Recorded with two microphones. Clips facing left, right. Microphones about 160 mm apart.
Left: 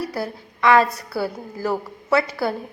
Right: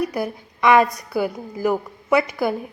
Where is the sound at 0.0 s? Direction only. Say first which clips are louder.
Right 3 dB; 15° right (ahead or behind).